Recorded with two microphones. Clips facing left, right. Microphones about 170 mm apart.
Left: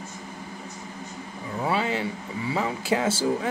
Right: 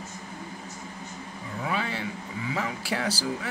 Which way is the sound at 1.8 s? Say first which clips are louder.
Left 5 dB; 15° left (ahead or behind).